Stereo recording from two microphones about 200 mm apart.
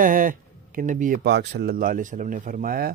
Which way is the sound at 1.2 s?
55° right (ahead or behind).